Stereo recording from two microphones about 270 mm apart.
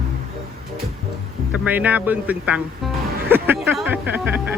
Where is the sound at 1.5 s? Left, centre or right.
Centre.